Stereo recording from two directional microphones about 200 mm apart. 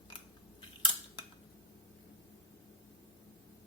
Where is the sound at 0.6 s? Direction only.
20° left (ahead or behind).